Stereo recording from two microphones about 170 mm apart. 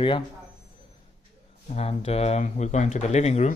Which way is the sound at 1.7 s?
40° left (ahead or behind).